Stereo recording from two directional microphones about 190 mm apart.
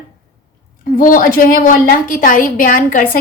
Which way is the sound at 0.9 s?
45° left (ahead or behind).